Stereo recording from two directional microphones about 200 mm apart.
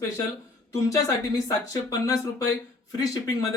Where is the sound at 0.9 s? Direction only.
15° left (ahead or behind).